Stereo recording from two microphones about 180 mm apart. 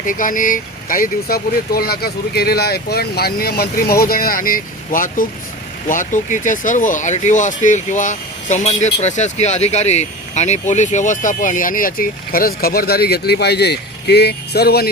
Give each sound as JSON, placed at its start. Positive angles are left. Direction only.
{"t": 0.0, "sound": "speech", "side_deg": 50}